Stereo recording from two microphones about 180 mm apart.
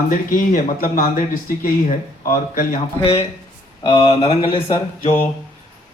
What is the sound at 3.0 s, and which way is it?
Speech, 35° left (ahead or behind).